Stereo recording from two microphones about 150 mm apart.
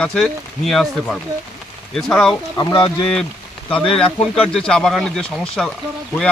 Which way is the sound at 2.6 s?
30° left (ahead or behind).